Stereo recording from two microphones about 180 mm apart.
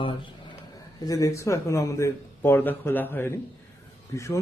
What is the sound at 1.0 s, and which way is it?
A man's voice, 20° left (ahead or behind).